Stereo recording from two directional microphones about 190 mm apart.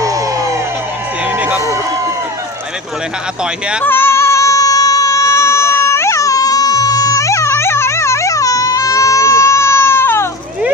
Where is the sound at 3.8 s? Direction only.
10° left (ahead or behind).